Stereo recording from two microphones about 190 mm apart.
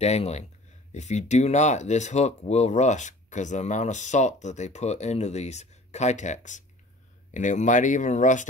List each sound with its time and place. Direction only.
0.0 s speech: 35° left (ahead or behind)